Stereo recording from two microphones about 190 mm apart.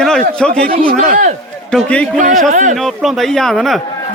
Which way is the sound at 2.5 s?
40° right (ahead or behind).